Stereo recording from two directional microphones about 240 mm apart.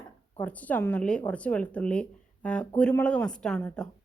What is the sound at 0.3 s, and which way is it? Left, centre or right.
Speech, centre.